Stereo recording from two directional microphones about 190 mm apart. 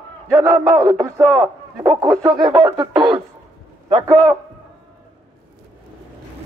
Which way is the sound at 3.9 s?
25° right (ahead or behind).